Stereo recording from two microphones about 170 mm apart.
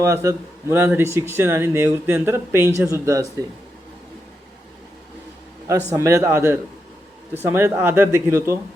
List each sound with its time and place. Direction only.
0.0 s speech: 15° right (ahead or behind)
5.9 s speech: 20° right (ahead or behind)